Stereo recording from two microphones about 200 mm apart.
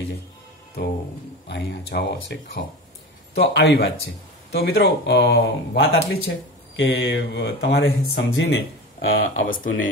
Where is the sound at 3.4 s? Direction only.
55° left (ahead or behind).